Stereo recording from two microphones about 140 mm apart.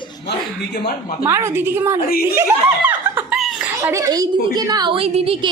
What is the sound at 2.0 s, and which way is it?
Speech, 90° left.